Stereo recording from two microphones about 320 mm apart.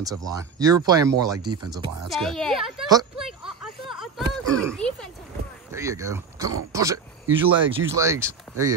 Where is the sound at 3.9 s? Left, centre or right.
Centre.